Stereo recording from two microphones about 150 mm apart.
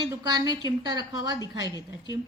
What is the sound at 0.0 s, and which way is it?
Speech, 25° right (ahead or behind).